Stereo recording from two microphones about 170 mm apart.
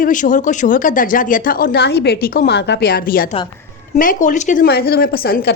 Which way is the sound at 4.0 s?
50° left (ahead or behind).